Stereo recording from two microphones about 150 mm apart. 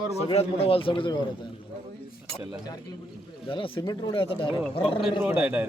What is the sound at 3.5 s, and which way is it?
A man's voice, 35° left (ahead or behind).